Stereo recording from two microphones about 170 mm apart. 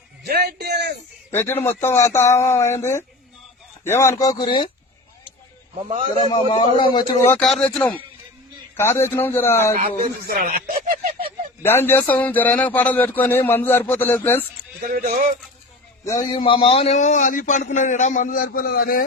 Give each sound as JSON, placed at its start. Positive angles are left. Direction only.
{"t": 0.3, "sound": "a man's voice", "side_deg": -70}
{"t": 1.3, "sound": "a man's voice", "side_deg": 10}
{"t": 6.2, "sound": "a man's voice", "side_deg": 30}
{"t": 7.3, "sound": "a man's voice", "side_deg": 5}
{"t": 9.7, "sound": "speech", "side_deg": -55}
{"t": 11.6, "sound": "a man's voice", "side_deg": 10}
{"t": 14.8, "sound": "speech", "side_deg": -60}
{"t": 16.3, "sound": "a man's voice", "side_deg": 30}